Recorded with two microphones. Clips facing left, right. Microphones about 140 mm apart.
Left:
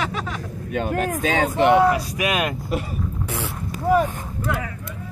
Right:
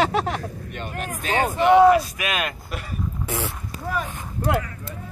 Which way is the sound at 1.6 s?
90° left.